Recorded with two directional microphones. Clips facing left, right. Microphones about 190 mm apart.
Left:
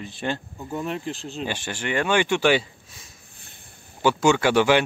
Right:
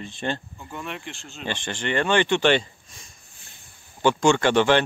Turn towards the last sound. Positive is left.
turn(degrees=10)  # may be behind; listen again after turning